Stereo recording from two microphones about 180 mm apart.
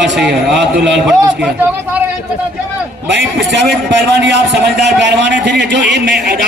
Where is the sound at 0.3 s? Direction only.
70° right (ahead or behind).